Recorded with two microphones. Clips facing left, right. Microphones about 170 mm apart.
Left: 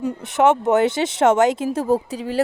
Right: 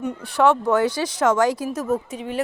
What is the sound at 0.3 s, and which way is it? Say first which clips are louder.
Speech: left 2 dB; 20° left (ahead or behind).